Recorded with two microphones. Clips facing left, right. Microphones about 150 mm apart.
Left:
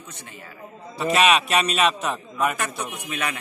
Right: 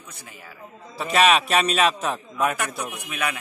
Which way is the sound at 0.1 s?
5° right (ahead or behind).